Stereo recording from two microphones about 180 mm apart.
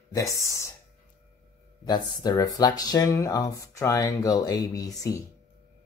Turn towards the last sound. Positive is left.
turn(degrees=20)  # may be behind; listen again after turning